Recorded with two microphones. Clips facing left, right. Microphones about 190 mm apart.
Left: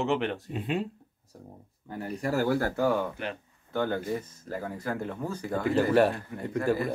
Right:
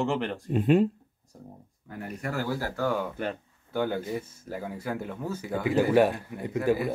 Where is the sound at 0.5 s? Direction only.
50° right (ahead or behind).